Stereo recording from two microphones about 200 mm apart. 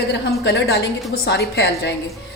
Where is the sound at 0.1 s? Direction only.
60° left (ahead or behind).